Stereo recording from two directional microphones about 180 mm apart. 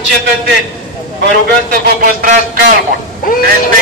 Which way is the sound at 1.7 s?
50° right (ahead or behind).